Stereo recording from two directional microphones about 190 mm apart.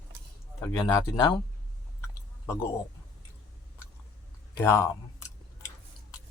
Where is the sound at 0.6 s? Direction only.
15° left (ahead or behind).